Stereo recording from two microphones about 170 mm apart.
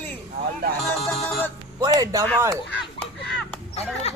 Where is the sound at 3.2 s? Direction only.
Centre (ahead or behind).